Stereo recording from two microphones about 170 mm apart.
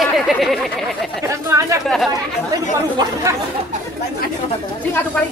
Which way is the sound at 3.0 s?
20° right (ahead or behind).